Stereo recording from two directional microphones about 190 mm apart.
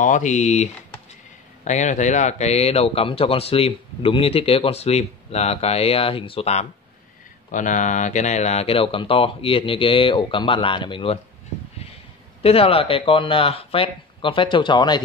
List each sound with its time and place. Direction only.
0.0 s speech: 40° left (ahead or behind)
12.4 s speech: 30° left (ahead or behind)